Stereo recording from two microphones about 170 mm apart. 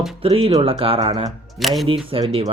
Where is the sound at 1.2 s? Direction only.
Centre (ahead or behind).